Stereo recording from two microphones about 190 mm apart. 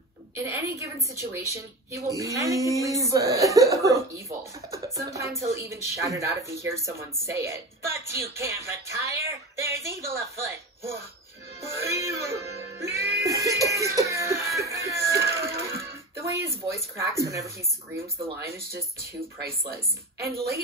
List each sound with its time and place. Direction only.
0.4 s a woman's voice: 15° right (ahead or behind)
12.0 s music: 15° right (ahead or behind)
13.1 s a sound: 15° right (ahead or behind)
15.8 s music: 15° right (ahead or behind)
16.4 s a woman's voice: 15° right (ahead or behind)
19.4 s a woman's voice: 55° right (ahead or behind)